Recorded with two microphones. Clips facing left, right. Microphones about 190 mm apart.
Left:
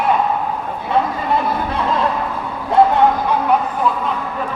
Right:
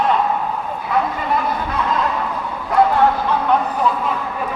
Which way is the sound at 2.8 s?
25° left (ahead or behind).